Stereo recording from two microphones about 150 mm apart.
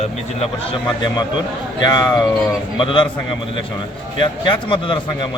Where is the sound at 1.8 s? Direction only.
25° left (ahead or behind).